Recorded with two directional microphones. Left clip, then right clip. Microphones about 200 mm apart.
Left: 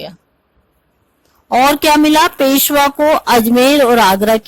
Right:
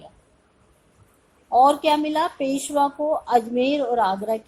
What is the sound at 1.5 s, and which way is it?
A woman's voice, 50° left (ahead or behind).